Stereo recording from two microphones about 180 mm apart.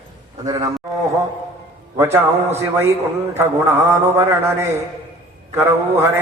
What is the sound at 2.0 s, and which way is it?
A man's voice, 15° right (ahead or behind).